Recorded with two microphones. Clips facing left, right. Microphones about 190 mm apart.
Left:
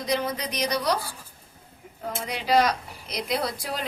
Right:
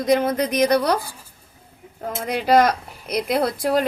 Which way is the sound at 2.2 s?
50° right (ahead or behind).